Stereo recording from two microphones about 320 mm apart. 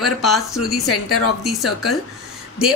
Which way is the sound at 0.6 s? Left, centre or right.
Left.